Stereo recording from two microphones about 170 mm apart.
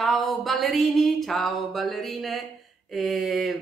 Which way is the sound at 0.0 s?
Centre (ahead or behind).